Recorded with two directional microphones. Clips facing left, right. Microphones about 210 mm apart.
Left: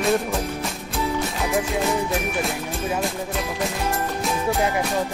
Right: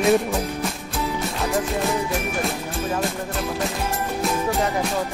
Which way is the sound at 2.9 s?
Centre (ahead or behind).